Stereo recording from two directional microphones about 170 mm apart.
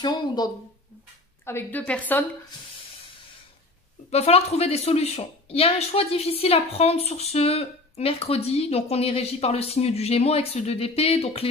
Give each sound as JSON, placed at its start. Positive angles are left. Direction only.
{"t": 1.4, "sound": "a woman's voice", "side_deg": 15}
{"t": 4.1, "sound": "speech", "side_deg": 40}